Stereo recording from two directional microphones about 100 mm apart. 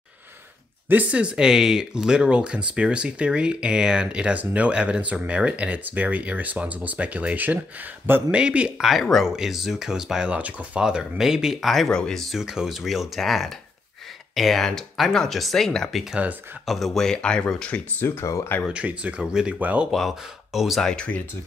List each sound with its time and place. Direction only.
0.8 s speech: 15° right (ahead or behind); by 18.1 s 15° left (ahead or behind)
18.2 s speech: 30° left (ahead or behind)
18.7 s speech: 10° right (ahead or behind)
19.9 s speech: centre (ahead or behind)